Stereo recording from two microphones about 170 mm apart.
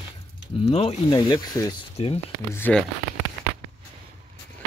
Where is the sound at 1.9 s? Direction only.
35° left (ahead or behind).